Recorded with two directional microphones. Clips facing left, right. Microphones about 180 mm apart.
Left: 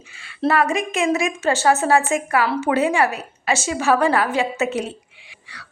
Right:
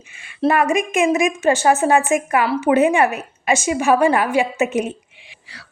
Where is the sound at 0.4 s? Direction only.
15° right (ahead or behind).